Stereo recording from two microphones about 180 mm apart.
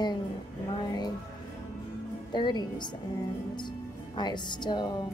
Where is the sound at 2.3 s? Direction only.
25° left (ahead or behind).